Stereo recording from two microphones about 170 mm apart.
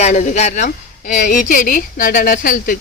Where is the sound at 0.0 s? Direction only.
45° left (ahead or behind).